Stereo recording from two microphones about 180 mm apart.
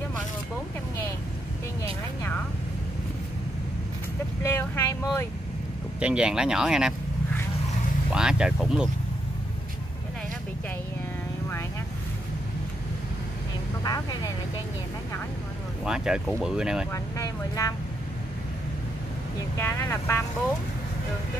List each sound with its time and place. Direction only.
4.4 s speech: 15° left (ahead or behind)
5.9 s speech: 5° right (ahead or behind)
8.1 s speech: 5° right (ahead or behind)
13.8 s vehicle: 20° left (ahead or behind)
15.8 s speech: 5° right (ahead or behind)
16.9 s speech: 20° left (ahead or behind)
19.6 s speech: 15° left (ahead or behind)